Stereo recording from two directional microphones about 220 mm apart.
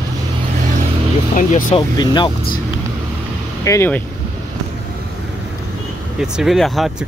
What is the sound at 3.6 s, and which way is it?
Speech, 15° left (ahead or behind).